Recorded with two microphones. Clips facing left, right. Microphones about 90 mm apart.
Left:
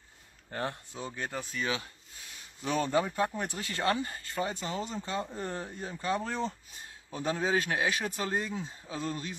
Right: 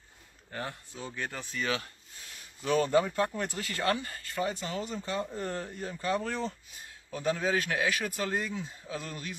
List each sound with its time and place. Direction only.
0.5 s speech: 35° left (ahead or behind)